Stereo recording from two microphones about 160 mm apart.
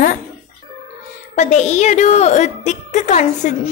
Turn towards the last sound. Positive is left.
turn(degrees=45)  # may be behind; listen again after turning